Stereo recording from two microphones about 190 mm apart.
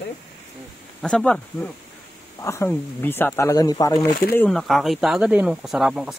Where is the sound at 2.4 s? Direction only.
15° left (ahead or behind).